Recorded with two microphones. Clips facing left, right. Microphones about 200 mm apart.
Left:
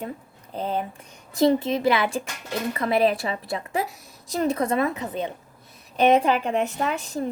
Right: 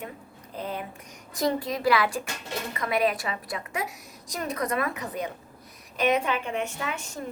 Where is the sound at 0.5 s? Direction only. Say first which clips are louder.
Left 6 dB; 30° left (ahead or behind).